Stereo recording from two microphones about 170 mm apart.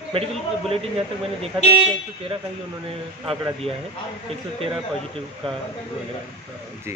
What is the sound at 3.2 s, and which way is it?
Speech, 35° right (ahead or behind).